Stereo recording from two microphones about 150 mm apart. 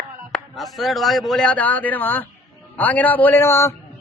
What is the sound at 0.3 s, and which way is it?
A man's voice, 5° left (ahead or behind).